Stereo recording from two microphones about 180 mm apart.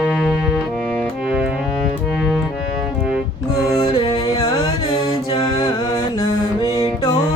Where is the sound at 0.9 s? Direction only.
5° left (ahead or behind).